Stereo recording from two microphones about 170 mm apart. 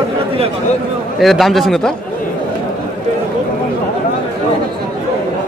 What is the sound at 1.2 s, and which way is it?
Speech, centre (ahead or behind).